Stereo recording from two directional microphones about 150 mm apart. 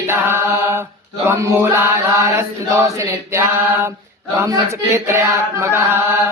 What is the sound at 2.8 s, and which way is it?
Chant, 20° right (ahead or behind).